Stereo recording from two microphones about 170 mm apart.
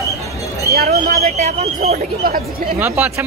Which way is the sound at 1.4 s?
40° right (ahead or behind).